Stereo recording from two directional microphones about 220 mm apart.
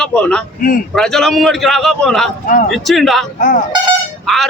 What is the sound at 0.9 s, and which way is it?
Speech, centre (ahead or behind).